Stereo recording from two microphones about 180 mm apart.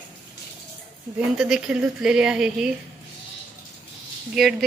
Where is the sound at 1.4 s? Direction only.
5° right (ahead or behind).